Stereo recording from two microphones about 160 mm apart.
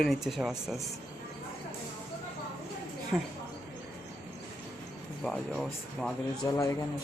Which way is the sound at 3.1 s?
10° right (ahead or behind).